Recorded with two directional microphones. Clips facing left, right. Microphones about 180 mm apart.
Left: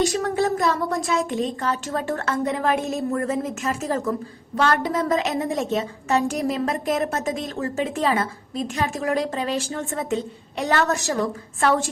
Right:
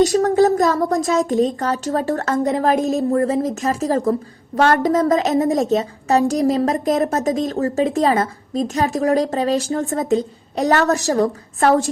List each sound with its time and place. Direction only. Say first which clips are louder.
0.0 s a woman's voice: right 7 dB; 40° right (ahead or behind)